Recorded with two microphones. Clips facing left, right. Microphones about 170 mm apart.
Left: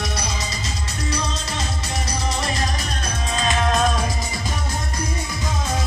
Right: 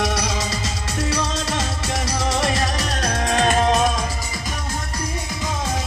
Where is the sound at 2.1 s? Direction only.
75° right (ahead or behind).